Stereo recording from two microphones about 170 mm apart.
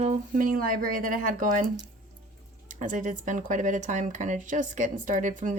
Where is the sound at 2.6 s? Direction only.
50° right (ahead or behind).